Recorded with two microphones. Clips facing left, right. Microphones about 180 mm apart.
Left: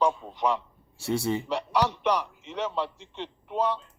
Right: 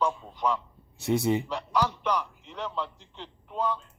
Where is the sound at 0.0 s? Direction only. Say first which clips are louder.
Left 3 dB; 75° left (ahead or behind).